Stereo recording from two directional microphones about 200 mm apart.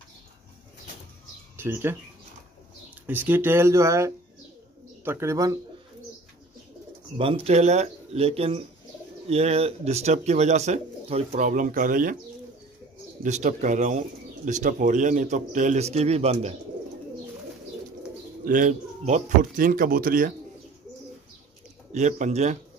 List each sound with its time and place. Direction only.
1.6 s speech: 10° right (ahead or behind)
3.1 s speech: 10° right (ahead or behind)
7.2 s speech: 25° right (ahead or behind); by 12.2 s 40° right (ahead or behind)
13.2 s speech: 40° right (ahead or behind)
18.4 s speech: 40° right (ahead or behind)
21.9 s speech: 35° right (ahead or behind)